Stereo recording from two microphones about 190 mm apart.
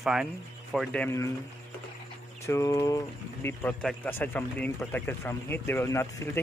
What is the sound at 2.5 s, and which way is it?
Speech, 15° left (ahead or behind).